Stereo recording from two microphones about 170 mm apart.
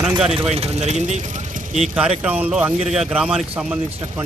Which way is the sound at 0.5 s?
40° right (ahead or behind).